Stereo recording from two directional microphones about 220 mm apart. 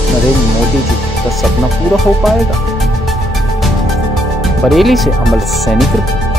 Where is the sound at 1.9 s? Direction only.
Centre (ahead or behind).